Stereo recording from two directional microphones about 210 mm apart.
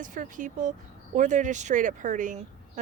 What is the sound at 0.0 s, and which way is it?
Speech, 40° right (ahead or behind).